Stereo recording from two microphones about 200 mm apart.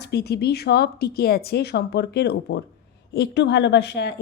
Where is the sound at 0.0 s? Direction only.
55° left (ahead or behind).